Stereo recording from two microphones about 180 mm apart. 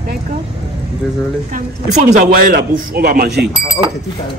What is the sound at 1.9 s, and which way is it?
Speech, 45° right (ahead or behind).